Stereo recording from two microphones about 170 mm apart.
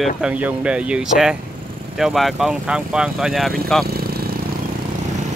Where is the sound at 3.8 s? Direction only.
65° right (ahead or behind).